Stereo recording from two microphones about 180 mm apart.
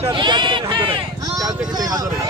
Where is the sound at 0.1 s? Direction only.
25° right (ahead or behind).